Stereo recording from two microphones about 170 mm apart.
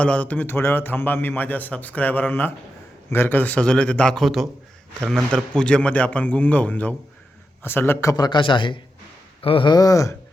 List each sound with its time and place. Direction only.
0.0 s a man's voice: 10° left (ahead or behind)